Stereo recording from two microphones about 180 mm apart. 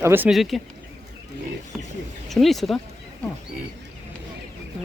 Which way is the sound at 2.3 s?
Centre (ahead or behind).